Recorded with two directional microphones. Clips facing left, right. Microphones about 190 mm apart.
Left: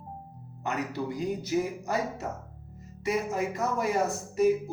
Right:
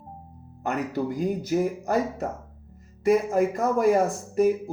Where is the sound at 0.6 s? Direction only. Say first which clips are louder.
Right 5 dB; 50° right (ahead or behind).